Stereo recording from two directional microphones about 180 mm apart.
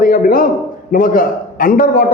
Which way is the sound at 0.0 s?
50° left (ahead or behind).